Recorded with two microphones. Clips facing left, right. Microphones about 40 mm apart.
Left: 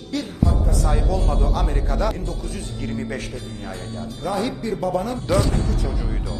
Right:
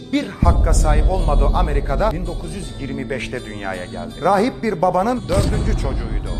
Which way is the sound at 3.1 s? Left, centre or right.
Right.